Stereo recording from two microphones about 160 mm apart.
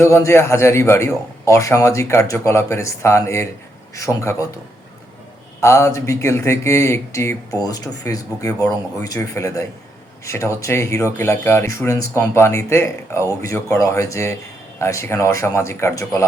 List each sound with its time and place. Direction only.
0.0 s speech: 15° left (ahead or behind)
5.5 s speech: 15° left (ahead or behind)